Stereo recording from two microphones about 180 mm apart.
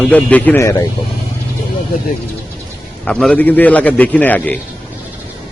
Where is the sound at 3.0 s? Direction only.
5° left (ahead or behind).